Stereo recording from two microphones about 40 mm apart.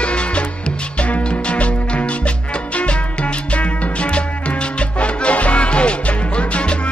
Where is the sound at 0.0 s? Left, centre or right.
Left.